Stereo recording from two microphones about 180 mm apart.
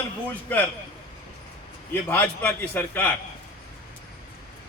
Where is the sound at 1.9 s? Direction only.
10° left (ahead or behind).